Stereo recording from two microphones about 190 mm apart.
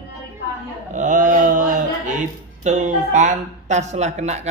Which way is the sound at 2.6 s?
40° right (ahead or behind).